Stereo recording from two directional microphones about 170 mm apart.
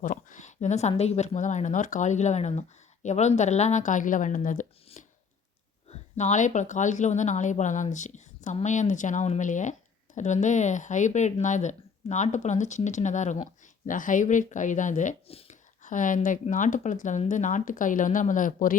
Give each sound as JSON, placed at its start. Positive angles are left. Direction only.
{"t": 0.0, "sound": "speech", "side_deg": 50}
{"t": 5.0, "sound": "scissors", "side_deg": 45}
{"t": 5.9, "sound": "speech", "side_deg": 40}
{"t": 15.8, "sound": "speech", "side_deg": 50}